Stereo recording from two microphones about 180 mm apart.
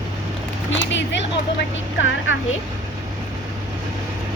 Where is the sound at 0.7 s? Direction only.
85° left.